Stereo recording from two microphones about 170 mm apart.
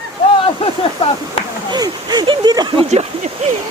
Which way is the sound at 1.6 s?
25° right (ahead or behind).